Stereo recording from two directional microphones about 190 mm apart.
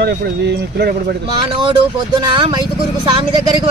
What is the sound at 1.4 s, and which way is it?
Speech, 25° right (ahead or behind).